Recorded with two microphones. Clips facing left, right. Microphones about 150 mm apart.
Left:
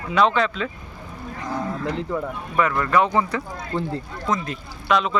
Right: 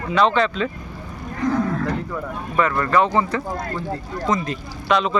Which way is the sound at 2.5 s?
5° left (ahead or behind).